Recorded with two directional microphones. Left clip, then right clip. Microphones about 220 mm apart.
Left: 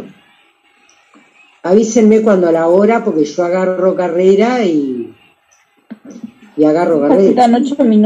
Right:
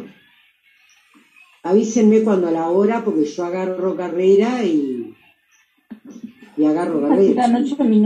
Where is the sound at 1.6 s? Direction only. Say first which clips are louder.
Left 6 dB; 40° left (ahead or behind).